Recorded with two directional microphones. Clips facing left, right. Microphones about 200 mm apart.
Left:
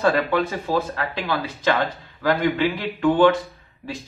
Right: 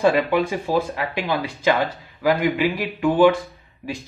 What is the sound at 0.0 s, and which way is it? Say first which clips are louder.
Speech: right 2 dB; 15° right (ahead or behind).